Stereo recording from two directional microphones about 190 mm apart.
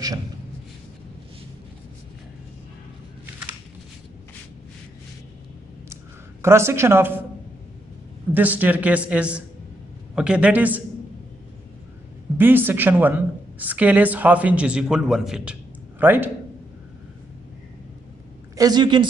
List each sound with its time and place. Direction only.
6.4 s a woman's voice: 15° right (ahead or behind)
8.3 s a woman's voice: 10° right (ahead or behind)
12.4 s a woman's voice: 10° right (ahead or behind)
18.6 s a woman's voice: 20° right (ahead or behind)